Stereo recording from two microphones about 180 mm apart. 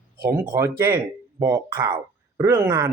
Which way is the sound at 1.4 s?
20° right (ahead or behind).